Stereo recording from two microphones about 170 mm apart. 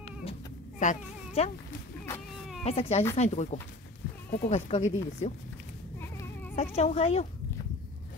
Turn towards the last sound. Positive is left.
turn(degrees=35)  # may be behind; listen again after turning